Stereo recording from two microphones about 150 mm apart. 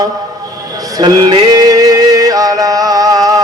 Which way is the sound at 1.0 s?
30° right (ahead or behind).